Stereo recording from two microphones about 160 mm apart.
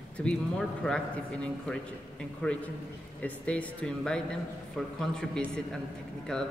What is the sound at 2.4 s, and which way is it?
Speech, 5° left (ahead or behind).